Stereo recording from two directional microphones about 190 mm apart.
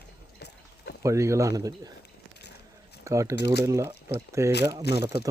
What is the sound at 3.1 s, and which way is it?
Speech, 15° right (ahead or behind).